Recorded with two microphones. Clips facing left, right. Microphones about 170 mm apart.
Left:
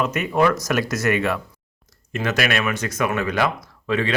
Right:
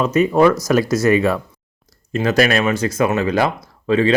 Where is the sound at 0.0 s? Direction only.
30° right (ahead or behind).